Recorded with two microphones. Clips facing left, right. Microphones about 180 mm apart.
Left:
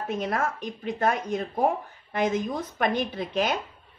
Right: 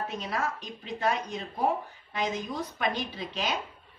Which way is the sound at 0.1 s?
50° left (ahead or behind).